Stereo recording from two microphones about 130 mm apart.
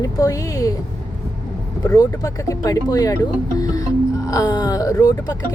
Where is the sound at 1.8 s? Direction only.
30° left (ahead or behind).